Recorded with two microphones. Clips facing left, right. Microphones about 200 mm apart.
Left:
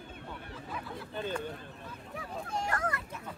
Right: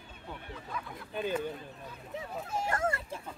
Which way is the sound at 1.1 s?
10° right (ahead or behind).